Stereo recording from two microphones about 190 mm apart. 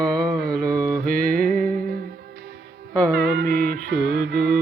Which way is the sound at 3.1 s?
55° right (ahead or behind).